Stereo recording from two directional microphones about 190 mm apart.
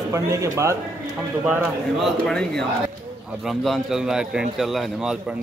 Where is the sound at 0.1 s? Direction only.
15° right (ahead or behind).